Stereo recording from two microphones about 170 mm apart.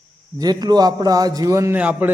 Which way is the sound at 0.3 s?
25° right (ahead or behind).